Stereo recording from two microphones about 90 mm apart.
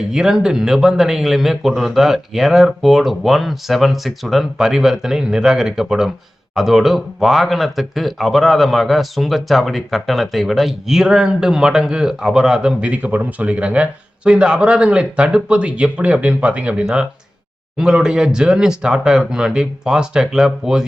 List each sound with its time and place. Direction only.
0.1 s speech: 5° right (ahead or behind)